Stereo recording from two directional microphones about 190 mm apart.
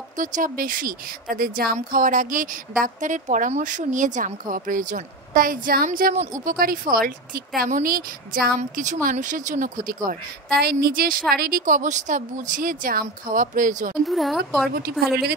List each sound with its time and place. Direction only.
0.2 s speech: 45° right (ahead or behind)
14.0 s a woman's voice: centre (ahead or behind)